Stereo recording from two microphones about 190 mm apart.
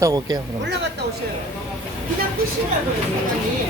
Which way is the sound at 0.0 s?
20° right (ahead or behind).